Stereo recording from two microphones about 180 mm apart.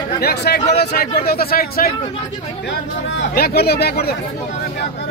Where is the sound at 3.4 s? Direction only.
60° left (ahead or behind).